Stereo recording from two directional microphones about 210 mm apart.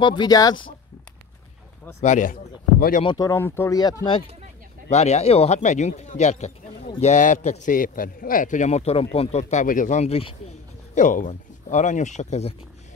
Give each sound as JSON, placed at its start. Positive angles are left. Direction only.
{"t": 0.0, "sound": "speech", "side_deg": 20}
{"t": 2.0, "sound": "a man's voice", "side_deg": 35}
{"t": 3.0, "sound": "speech", "side_deg": 20}
{"t": 4.0, "sound": "a man's voice", "side_deg": 25}